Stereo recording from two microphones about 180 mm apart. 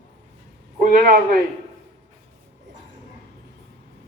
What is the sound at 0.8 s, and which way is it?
Speech, 50° right (ahead or behind).